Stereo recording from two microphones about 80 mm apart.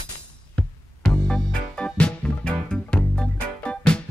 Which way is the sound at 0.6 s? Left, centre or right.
Centre.